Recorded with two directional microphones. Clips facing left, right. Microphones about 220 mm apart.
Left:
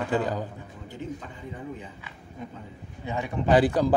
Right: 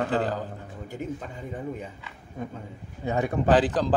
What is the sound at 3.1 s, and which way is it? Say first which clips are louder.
Speech: right 5 dB; 45° right (ahead or behind).